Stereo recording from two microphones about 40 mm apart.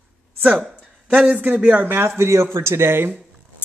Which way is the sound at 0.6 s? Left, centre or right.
Right.